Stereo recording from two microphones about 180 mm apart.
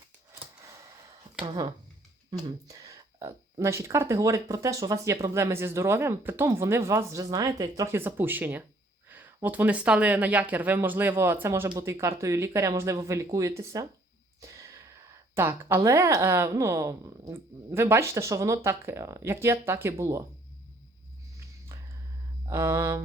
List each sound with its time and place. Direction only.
2.3 s speech: 20° right (ahead or behind)
14.4 s a sound: 15° right (ahead or behind)
15.4 s speech: 15° right (ahead or behind)
22.4 s speech: 15° right (ahead or behind)